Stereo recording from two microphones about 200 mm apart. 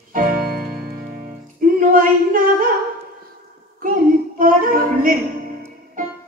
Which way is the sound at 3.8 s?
45° right (ahead or behind).